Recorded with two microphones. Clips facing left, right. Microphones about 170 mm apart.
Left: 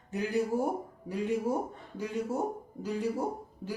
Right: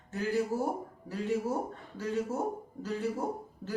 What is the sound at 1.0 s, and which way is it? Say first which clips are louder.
Speech: left 1 dB; 15° left (ahead or behind).